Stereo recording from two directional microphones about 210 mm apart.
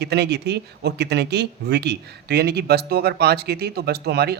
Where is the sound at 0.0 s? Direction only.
50° right (ahead or behind).